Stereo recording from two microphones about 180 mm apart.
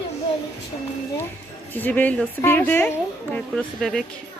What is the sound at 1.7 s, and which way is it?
A woman's voice, 10° left (ahead or behind).